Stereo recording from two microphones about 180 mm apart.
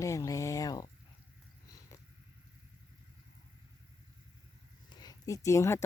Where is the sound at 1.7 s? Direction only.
20° left (ahead or behind).